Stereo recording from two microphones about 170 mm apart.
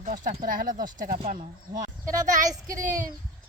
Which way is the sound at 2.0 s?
20° right (ahead or behind).